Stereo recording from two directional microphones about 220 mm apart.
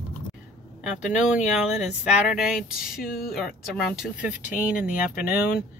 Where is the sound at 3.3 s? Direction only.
Centre (ahead or behind).